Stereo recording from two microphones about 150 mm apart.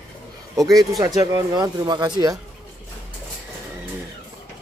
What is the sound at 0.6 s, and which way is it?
Speech, 25° right (ahead or behind).